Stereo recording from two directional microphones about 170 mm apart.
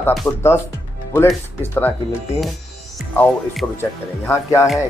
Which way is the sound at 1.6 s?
10° left (ahead or behind).